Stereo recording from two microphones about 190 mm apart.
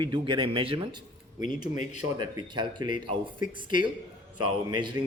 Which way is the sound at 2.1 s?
25° right (ahead or behind).